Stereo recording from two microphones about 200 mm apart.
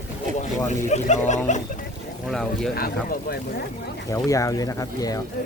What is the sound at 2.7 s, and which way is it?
Speech, 50° left (ahead or behind).